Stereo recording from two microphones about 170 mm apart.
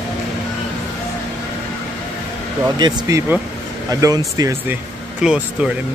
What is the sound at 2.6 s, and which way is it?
Speech, 25° right (ahead or behind).